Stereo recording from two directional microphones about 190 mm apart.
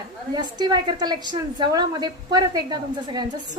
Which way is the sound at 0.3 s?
20° right (ahead or behind).